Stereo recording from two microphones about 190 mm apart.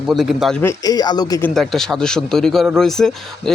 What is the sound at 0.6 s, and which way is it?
Speech, 20° left (ahead or behind).